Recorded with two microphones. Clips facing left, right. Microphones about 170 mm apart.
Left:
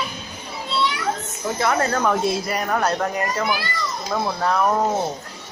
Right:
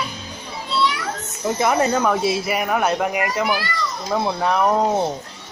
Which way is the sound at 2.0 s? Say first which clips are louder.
Right 1 dB; 5° right (ahead or behind).